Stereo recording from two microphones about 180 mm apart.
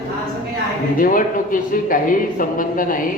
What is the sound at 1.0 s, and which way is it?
Speech, 50° left (ahead or behind).